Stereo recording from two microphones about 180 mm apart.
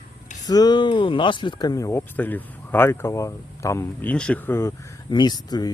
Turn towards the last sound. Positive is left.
turn(degrees=20)  # may be behind; listen again after turning